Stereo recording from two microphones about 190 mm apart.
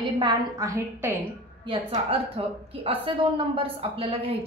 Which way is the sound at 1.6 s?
30° right (ahead or behind).